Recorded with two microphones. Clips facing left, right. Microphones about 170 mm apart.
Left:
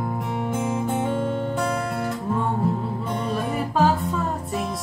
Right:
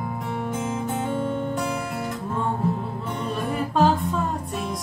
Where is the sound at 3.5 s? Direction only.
5° left (ahead or behind).